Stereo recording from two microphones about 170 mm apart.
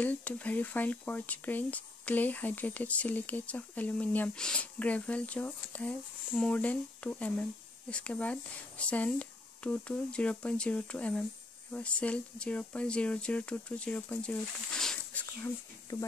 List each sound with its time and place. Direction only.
0.0 s speech: 10° left (ahead or behind)
15.4 s speech: 20° left (ahead or behind)